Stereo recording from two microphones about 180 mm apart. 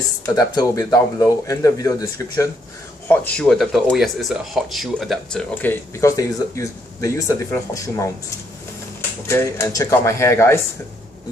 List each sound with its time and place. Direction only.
0.2 s speech: 20° left (ahead or behind)
3.1 s speech: 5° left (ahead or behind); by 8.1 s 20° left (ahead or behind)
9.3 s speech: 15° left (ahead or behind)